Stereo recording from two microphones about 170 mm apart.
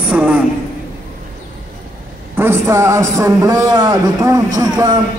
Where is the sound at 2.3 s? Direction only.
15° right (ahead or behind).